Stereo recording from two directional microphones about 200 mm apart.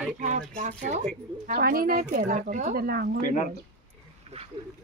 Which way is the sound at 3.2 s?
40° left (ahead or behind).